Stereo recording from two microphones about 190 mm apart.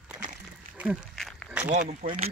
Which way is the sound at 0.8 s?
5° right (ahead or behind).